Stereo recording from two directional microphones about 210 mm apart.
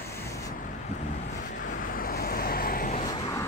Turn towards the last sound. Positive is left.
turn(degrees=15)  # may be behind; listen again after turning